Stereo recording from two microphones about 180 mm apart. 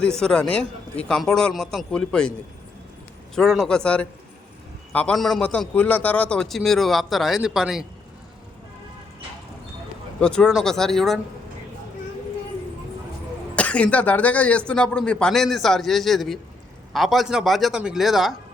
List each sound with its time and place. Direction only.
0.2 s a man's voice: 5° left (ahead or behind)
3.3 s a man's voice: centre (ahead or behind)
10.2 s a man's voice: 5° left (ahead or behind)
13.6 s a man's voice: 5° left (ahead or behind)